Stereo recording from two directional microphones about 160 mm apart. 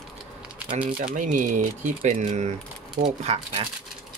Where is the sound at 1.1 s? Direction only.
50° right (ahead or behind).